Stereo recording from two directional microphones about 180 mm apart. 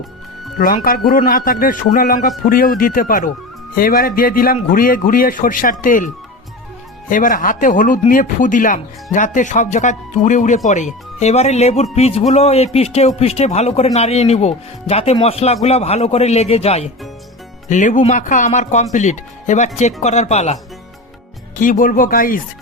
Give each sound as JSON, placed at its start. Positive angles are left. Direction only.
{"t": 0.6, "sound": "speech", "side_deg": 55}
{"t": 7.1, "sound": "speech", "side_deg": 50}
{"t": 17.7, "sound": "speech", "side_deg": 45}
{"t": 21.5, "sound": "speech", "side_deg": 50}